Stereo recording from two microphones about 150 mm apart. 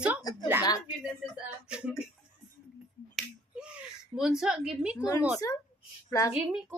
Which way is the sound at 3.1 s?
5° right (ahead or behind).